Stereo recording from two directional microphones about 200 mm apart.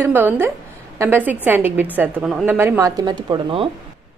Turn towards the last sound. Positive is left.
turn(degrees=-25)  # may be behind; listen again after turning